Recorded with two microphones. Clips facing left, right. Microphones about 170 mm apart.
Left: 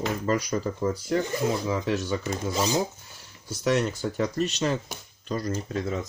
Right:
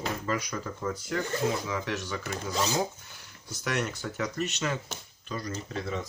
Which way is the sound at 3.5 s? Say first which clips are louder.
Left 7 dB; 30° left (ahead or behind).